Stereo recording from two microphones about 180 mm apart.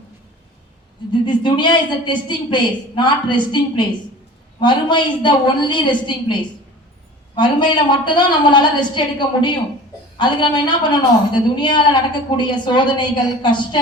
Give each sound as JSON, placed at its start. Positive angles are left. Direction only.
{"t": 1.2, "sound": "a woman's voice", "side_deg": 25}
{"t": 7.3, "sound": "a woman's voice", "side_deg": 25}